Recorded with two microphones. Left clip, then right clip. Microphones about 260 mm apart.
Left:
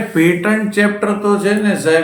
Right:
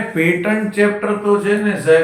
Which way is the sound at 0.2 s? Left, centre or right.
Left.